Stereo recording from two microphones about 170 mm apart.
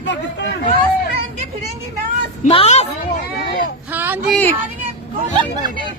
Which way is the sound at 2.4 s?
40° left (ahead or behind).